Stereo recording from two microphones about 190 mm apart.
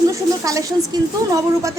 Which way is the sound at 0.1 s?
15° right (ahead or behind).